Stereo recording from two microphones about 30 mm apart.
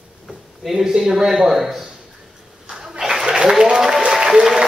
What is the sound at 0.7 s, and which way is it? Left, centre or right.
Speech, centre.